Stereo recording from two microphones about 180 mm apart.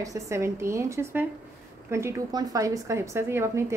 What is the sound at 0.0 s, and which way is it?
A woman's voice, 15° right (ahead or behind).